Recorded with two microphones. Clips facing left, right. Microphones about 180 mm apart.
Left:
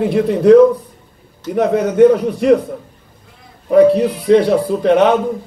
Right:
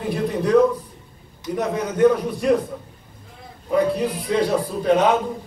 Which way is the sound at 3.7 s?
60° left (ahead or behind).